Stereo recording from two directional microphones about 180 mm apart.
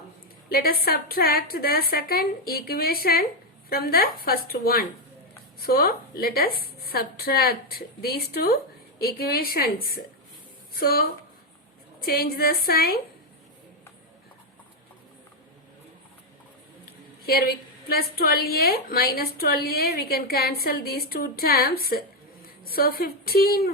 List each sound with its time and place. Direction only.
0.5 s a woman's voice: 55° left (ahead or behind)
10.8 s a woman's voice: 55° left (ahead or behind)
12.0 s a woman's voice: 55° left (ahead or behind)
17.2 s a woman's voice: 55° left (ahead or behind)